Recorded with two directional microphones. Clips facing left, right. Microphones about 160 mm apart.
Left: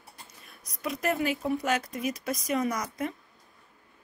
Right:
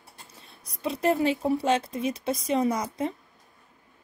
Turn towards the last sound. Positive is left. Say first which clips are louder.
# right 4 dB
turn(degrees=-30)  # may be behind; listen again after turning